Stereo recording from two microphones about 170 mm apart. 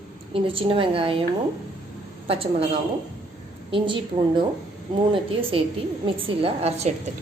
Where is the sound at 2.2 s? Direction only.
35° right (ahead or behind).